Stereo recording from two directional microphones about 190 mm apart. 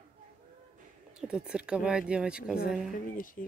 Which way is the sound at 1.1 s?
5° right (ahead or behind).